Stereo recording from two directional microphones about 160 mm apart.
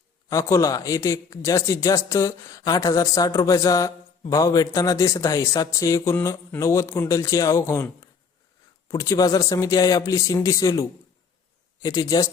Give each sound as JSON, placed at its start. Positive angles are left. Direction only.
{"t": 0.3, "sound": "a man's voice", "side_deg": 20}